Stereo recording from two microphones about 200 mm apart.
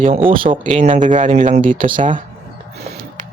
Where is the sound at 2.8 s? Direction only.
40° right (ahead or behind).